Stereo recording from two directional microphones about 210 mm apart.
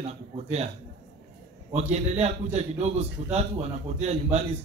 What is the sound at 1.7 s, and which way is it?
A man's voice, 30° right (ahead or behind).